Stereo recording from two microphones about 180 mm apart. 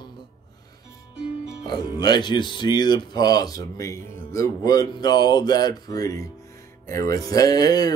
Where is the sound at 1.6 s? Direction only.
20° left (ahead or behind).